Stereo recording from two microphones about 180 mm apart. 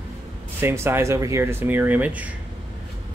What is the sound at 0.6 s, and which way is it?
Speech, 15° right (ahead or behind).